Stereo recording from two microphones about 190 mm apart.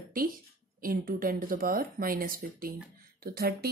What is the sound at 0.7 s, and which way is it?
Speech, 45° right (ahead or behind).